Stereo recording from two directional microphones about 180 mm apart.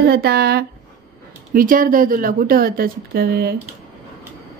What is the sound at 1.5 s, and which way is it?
Speech, 50° right (ahead or behind).